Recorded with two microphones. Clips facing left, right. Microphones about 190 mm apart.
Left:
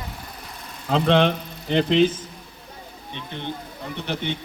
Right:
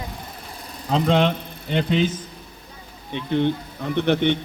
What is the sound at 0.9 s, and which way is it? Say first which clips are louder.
Speech: left 1 dB; 65° left (ahead or behind).